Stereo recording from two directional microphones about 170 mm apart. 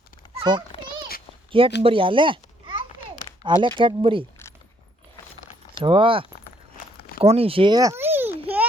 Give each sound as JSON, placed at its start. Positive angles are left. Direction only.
{"t": 0.3, "sound": "a sound", "side_deg": -25}
{"t": 1.5, "sound": "a child's voice", "side_deg": -30}
{"t": 5.8, "sound": "speech", "side_deg": -30}